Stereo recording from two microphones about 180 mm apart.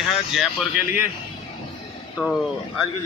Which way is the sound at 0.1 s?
Centre (ahead or behind).